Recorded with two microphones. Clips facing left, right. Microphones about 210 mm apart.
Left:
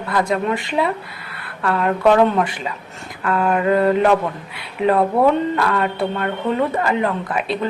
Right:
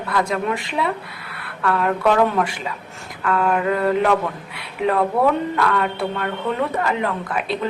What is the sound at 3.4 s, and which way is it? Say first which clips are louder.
Speech: left 4 dB; centre (ahead or behind).